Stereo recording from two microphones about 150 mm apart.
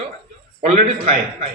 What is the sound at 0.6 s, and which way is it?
Speech, 50° right (ahead or behind).